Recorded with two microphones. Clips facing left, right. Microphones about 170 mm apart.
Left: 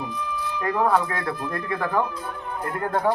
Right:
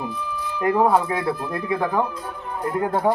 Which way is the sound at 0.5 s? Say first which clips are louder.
Right 4 dB; 10° right (ahead or behind).